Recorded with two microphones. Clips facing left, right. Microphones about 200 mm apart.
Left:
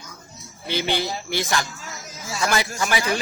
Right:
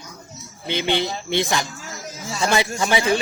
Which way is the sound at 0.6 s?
20° right (ahead or behind).